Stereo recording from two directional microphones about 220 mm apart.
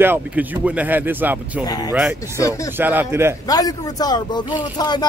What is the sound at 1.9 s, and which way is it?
Speech, 10° right (ahead or behind).